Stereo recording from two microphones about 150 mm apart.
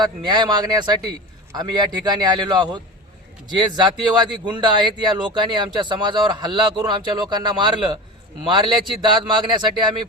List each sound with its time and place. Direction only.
0.0 s a man's voice: 30° right (ahead or behind)